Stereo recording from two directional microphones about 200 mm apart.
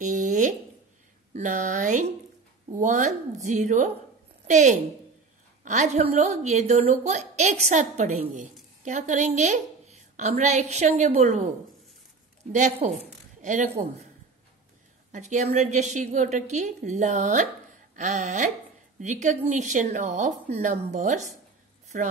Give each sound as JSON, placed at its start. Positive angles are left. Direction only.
{"t": 0.0, "sound": "a sound", "side_deg": -40}
{"t": 1.3, "sound": "a woman's voice", "side_deg": -40}
{"t": 12.5, "sound": "speech", "side_deg": -35}
{"t": 15.1, "sound": "speech", "side_deg": -35}